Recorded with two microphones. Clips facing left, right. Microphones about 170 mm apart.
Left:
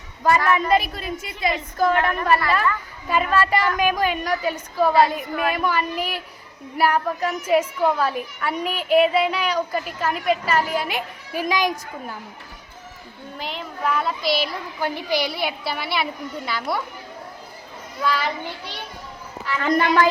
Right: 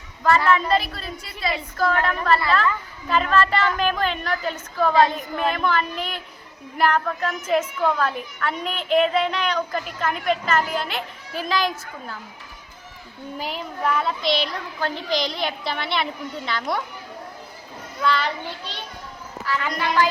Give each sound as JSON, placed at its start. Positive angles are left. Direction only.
{"t": 0.2, "sound": "a child's voice", "side_deg": 15}
{"t": 13.8, "sound": "a child's voice", "side_deg": 0}
{"t": 18.0, "sound": "a child's voice", "side_deg": 10}
{"t": 19.6, "sound": "a woman's voice", "side_deg": 55}